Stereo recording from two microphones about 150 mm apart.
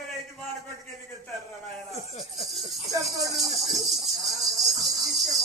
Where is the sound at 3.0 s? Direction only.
Centre (ahead or behind).